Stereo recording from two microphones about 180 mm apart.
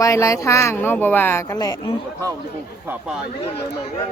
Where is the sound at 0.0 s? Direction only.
15° left (ahead or behind).